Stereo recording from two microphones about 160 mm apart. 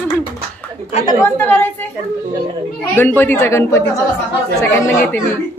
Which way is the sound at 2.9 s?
15° left (ahead or behind).